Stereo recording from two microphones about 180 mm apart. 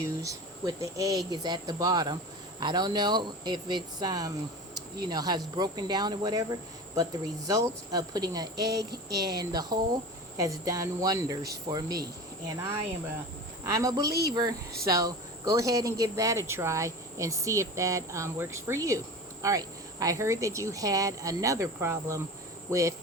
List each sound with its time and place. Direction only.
0.0 s speech: 20° right (ahead or behind)